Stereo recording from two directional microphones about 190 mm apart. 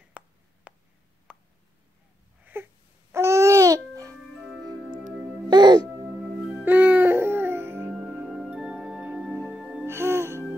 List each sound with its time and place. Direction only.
0.2 s a sound: 5° right (ahead or behind)
2.4 s babbling: 10° right (ahead or behind)
5.5 s music: 25° right (ahead or behind)
6.6 s music: 10° right (ahead or behind)